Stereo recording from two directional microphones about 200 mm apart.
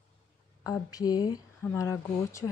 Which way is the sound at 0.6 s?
15° left (ahead or behind).